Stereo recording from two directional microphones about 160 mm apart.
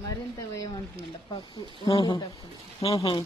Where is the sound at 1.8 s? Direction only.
30° left (ahead or behind).